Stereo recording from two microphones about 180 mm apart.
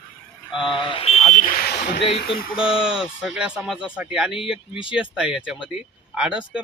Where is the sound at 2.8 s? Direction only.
5° right (ahead or behind).